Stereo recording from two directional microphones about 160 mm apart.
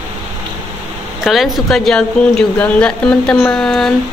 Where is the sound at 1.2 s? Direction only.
Centre (ahead or behind).